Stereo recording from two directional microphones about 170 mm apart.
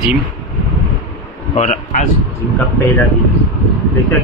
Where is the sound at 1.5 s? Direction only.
45° left (ahead or behind).